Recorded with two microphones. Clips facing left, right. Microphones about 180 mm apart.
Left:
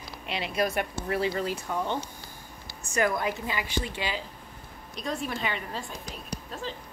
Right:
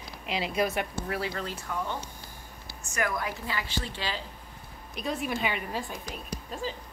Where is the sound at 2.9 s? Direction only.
25° left (ahead or behind).